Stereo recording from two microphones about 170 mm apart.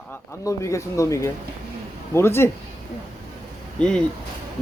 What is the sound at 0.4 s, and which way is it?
Speech, 20° left (ahead or behind).